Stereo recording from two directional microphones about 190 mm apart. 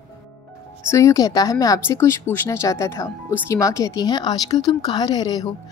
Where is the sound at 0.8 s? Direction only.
15° left (ahead or behind).